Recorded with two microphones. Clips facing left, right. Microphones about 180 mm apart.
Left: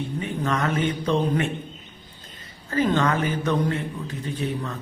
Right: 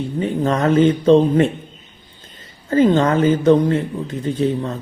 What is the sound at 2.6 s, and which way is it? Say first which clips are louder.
Speech: right 8 dB; 25° right (ahead or behind).